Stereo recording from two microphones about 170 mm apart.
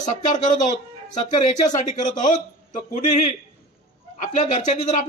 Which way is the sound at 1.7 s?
45° left (ahead or behind).